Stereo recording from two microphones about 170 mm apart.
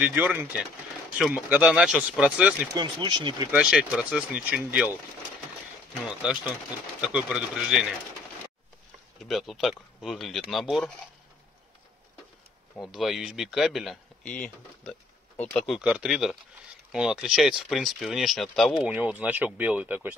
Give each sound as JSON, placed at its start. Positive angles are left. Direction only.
{"t": 0.0, "sound": "speech", "side_deg": -10}
{"t": 2.7, "sound": "speech", "side_deg": -25}
{"t": 3.5, "sound": "speech", "side_deg": -5}
{"t": 7.0, "sound": "speech", "side_deg": -5}
{"t": 9.2, "sound": "speech", "side_deg": 0}
{"t": 12.8, "sound": "speech", "side_deg": 0}